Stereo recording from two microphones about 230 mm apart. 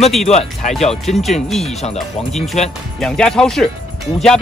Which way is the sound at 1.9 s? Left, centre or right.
Centre.